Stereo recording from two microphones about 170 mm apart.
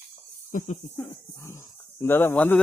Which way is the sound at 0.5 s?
50° left (ahead or behind).